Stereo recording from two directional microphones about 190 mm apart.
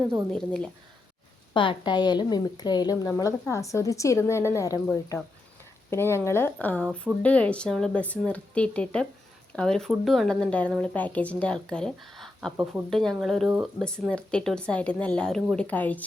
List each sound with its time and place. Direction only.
0.3 s speech: 5° left (ahead or behind)
1.5 s a woman's voice: 25° left (ahead or behind)
5.9 s a woman's voice: 15° left (ahead or behind)